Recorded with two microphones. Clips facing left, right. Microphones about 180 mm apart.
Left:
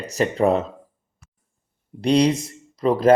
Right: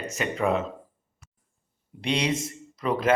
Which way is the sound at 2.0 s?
35° left (ahead or behind).